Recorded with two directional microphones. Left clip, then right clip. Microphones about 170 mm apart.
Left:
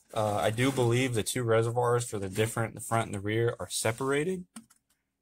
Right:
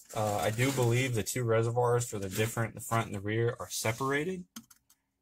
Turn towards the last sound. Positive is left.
turn(degrees=20)  # may be behind; listen again after turning